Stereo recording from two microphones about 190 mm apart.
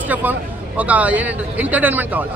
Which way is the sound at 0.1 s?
10° right (ahead or behind).